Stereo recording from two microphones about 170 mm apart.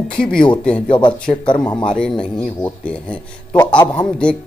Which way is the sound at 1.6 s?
25° left (ahead or behind).